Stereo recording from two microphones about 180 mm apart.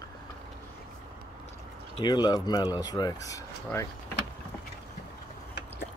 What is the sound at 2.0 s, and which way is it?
Speech, 25° left (ahead or behind).